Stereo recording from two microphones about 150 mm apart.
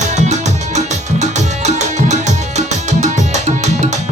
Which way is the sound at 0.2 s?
50° right (ahead or behind).